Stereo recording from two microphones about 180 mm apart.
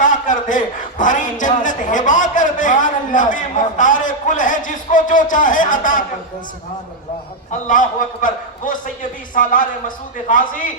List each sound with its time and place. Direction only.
0.0 s a man's voice: 45° left (ahead or behind)
7.7 s a man's voice: 45° left (ahead or behind)